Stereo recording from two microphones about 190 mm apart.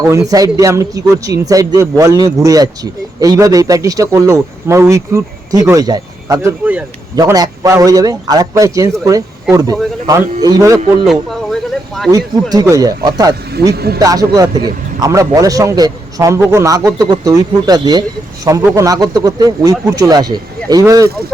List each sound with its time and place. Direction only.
0.3 s a man's voice: 20° right (ahead or behind)
11.0 s speech: centre (ahead or behind)
12.1 s a man's voice: 20° right (ahead or behind)
13.7 s speech: 55° right (ahead or behind)
14.0 s a man's voice: 20° right (ahead or behind)